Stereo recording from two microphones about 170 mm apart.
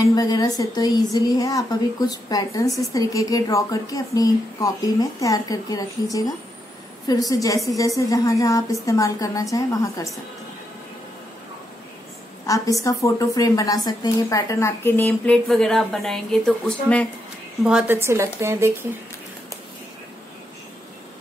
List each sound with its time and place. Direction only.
0.1 s speech: 25° left (ahead or behind)
12.4 s a woman's voice: 20° left (ahead or behind)
17.6 s speech: 10° right (ahead or behind)